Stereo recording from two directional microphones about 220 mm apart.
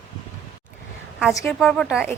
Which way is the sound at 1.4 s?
5° left (ahead or behind).